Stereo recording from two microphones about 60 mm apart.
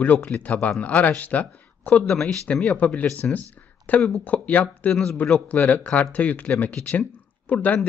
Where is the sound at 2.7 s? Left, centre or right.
Left.